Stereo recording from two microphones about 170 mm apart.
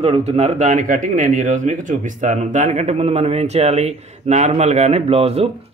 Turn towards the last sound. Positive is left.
turn(degrees=-35)  # may be behind; listen again after turning